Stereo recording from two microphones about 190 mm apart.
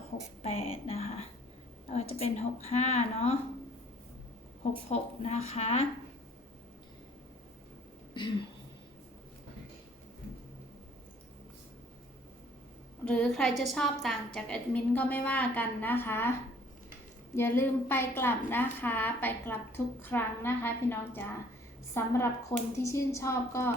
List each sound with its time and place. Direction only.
0.4 s a woman's voice: 30° left (ahead or behind)
4.9 s a woman's voice: 35° left (ahead or behind)
13.1 s a woman's voice: 5° left (ahead or behind)
17.3 s a woman's voice: 10° left (ahead or behind)